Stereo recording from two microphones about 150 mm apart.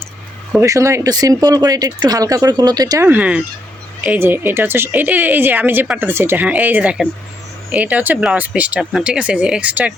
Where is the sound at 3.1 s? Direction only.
10° right (ahead or behind).